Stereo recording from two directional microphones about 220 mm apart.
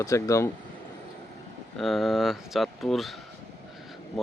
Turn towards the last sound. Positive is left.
turn(degrees=0)  # may be behind; listen again after turning